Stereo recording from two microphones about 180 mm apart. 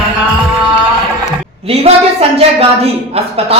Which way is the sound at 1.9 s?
35° right (ahead or behind).